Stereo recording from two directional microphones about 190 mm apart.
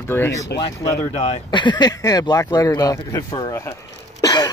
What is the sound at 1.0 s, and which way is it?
Speech, 35° left (ahead or behind).